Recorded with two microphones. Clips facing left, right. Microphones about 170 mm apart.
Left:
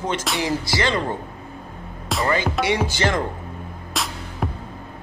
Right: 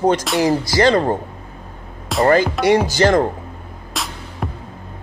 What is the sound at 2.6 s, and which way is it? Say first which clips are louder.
Speech: right 7 dB; 40° right (ahead or behind).